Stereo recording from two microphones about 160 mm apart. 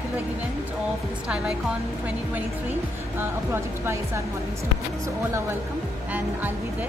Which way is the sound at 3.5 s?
15° right (ahead or behind).